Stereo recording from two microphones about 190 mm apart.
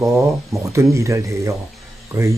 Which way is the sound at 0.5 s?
15° right (ahead or behind).